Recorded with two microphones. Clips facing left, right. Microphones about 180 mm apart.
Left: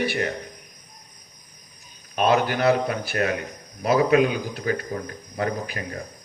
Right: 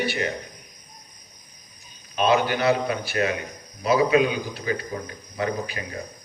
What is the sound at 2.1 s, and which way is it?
A man's voice, 50° left (ahead or behind).